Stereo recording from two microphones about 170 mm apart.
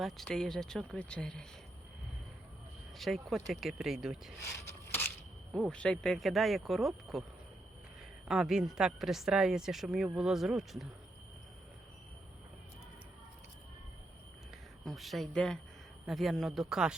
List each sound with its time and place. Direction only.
0.0 s a woman's voice: centre (ahead or behind)
3.0 s a woman's voice: centre (ahead or behind)
4.6 s a sound: 15° left (ahead or behind)
5.5 s a woman's voice: 5° left (ahead or behind)
8.3 s a woman's voice: 5° right (ahead or behind)
14.8 s a woman's voice: centre (ahead or behind)